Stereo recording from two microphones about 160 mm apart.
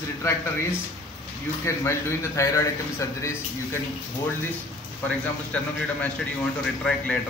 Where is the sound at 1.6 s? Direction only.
15° left (ahead or behind).